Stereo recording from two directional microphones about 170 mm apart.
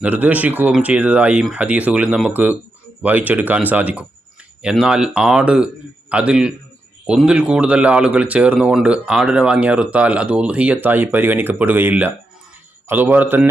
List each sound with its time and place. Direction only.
0.0 s speech: 10° right (ahead or behind)